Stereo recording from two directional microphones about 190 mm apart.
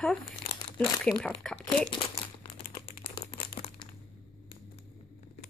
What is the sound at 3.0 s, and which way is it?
Crumpling, 30° left (ahead or behind).